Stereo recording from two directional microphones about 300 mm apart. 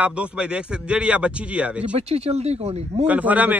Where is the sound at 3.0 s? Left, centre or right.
Centre.